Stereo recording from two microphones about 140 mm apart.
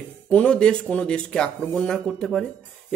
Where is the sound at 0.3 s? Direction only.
10° left (ahead or behind).